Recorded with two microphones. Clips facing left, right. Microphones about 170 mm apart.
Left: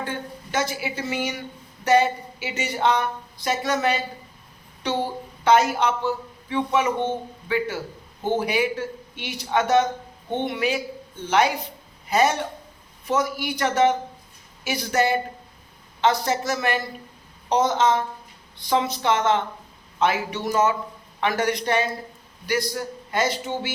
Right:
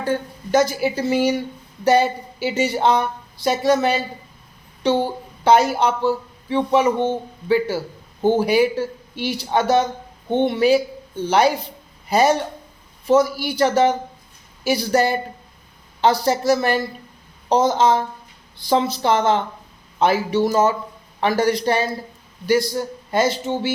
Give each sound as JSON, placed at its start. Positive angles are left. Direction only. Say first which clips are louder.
{"t": 0.5, "sound": "a man's voice", "louder": "right 9 dB", "side_deg": -40}